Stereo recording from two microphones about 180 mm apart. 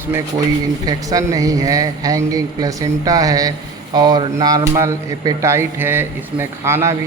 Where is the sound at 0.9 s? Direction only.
20° right (ahead or behind).